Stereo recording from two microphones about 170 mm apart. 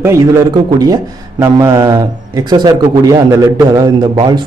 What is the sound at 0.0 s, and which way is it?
A man's voice, 20° right (ahead or behind).